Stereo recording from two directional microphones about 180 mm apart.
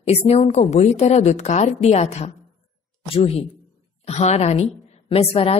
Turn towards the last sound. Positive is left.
turn(degrees=30)  # may be behind; listen again after turning